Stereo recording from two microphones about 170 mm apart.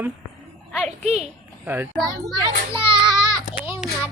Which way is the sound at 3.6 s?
10° right (ahead or behind).